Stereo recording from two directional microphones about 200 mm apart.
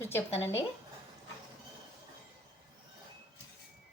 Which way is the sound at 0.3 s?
10° left (ahead or behind).